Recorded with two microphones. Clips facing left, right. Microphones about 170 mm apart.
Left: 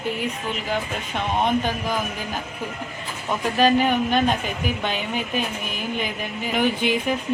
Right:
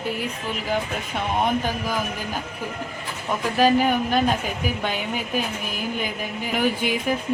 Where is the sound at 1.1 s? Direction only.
10° right (ahead or behind).